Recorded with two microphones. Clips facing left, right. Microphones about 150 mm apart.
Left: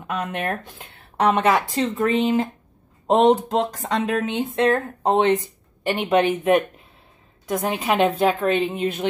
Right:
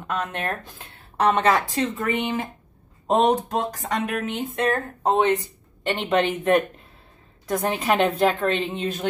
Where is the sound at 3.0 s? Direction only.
25° left (ahead or behind); by 6.2 s 10° left (ahead or behind).